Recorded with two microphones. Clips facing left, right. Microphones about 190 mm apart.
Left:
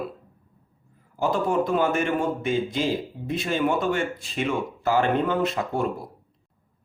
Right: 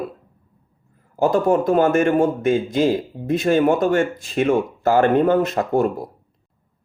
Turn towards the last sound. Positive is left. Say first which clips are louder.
# right 6 dB
turn(degrees=-45)  # may be behind; listen again after turning